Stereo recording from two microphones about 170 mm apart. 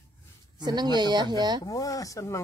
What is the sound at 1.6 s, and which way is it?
Speech, 20° left (ahead or behind).